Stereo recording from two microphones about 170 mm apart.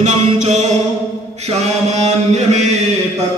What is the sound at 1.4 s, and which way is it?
Mantra, 40° right (ahead or behind).